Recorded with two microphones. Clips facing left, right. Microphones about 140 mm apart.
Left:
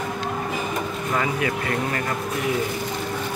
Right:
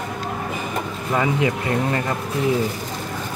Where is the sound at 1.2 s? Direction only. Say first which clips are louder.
Right 4 dB; 25° right (ahead or behind).